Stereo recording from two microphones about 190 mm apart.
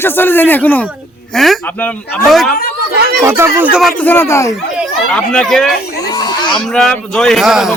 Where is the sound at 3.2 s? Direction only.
15° right (ahead or behind).